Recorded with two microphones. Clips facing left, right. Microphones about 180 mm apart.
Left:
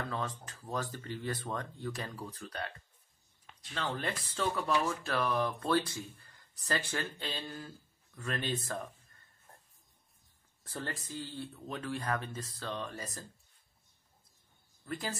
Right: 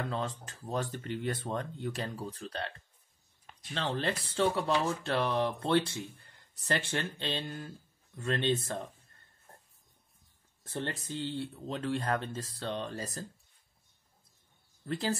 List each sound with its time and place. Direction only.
0.0 s speech: 25° right (ahead or behind)
3.7 s speech: 30° right (ahead or behind)
10.6 s speech: 25° right (ahead or behind)
14.9 s speech: 30° right (ahead or behind)